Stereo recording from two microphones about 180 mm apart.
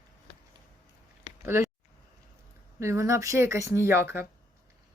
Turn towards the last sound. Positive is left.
turn(degrees=-15)  # may be behind; listen again after turning